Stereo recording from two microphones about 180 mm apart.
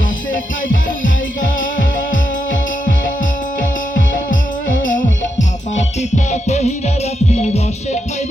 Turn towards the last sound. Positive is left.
turn(degrees=35)  # may be behind; listen again after turning